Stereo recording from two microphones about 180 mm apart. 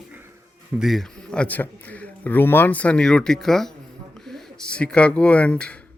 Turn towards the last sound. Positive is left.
turn(degrees=5)  # may be behind; listen again after turning